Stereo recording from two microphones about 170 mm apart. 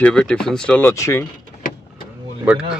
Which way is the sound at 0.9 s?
15° left (ahead or behind).